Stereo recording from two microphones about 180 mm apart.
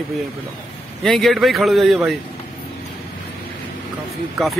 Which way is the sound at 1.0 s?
Centre (ahead or behind).